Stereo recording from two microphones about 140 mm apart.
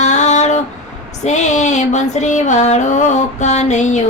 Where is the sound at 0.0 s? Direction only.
55° left (ahead or behind).